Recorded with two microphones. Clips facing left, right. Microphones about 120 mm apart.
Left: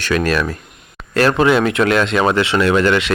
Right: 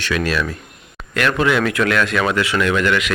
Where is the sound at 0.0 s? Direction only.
45° left (ahead or behind).